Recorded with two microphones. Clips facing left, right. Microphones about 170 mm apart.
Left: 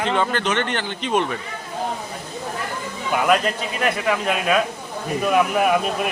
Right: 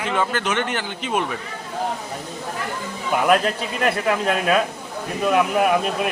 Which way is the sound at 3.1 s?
Centre (ahead or behind).